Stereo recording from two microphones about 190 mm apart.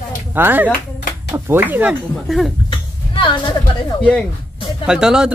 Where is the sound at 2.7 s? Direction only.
25° left (ahead or behind).